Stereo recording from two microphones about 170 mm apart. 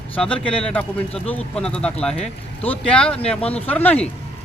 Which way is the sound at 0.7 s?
5° left (ahead or behind).